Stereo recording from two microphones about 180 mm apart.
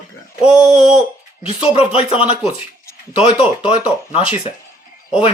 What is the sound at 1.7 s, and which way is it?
Speech, 35° left (ahead or behind).